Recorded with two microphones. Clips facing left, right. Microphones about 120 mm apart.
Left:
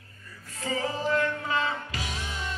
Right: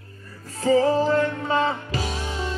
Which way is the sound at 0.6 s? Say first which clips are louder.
Right 11 dB; 40° right (ahead or behind).